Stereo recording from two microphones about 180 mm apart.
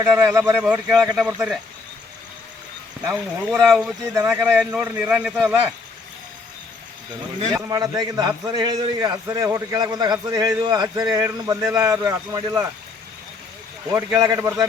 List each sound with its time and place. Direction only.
0.0 s speech: 15° right (ahead or behind)
3.1 s a man's voice: 5° right (ahead or behind)
4.1 s a man's voice: 15° right (ahead or behind)
7.5 s a man's voice: 15° right (ahead or behind)
13.9 s speech: 15° right (ahead or behind)